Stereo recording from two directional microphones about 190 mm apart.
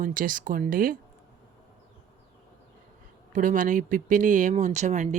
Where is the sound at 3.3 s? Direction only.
45° right (ahead or behind).